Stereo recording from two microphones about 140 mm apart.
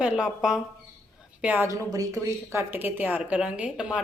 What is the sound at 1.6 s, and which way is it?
Speech, 25° right (ahead or behind).